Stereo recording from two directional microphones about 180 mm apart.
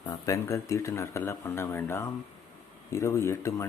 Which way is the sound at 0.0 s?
20° left (ahead or behind).